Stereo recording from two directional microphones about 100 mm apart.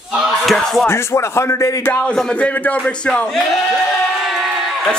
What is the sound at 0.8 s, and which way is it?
Speech, 25° left (ahead or behind).